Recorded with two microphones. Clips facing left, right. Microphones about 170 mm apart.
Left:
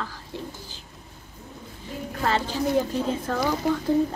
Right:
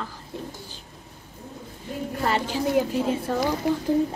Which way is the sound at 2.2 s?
10° right (ahead or behind).